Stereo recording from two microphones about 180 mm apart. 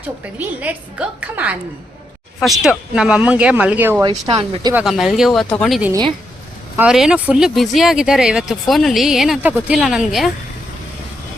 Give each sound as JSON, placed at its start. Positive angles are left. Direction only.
{"t": 0.3, "sound": "speech", "side_deg": -10}
{"t": 4.1, "sound": "speech", "side_deg": -30}
{"t": 4.7, "sound": "speech", "side_deg": -5}
{"t": 5.9, "sound": "speech", "side_deg": -25}
{"t": 6.7, "sound": "speech", "side_deg": -5}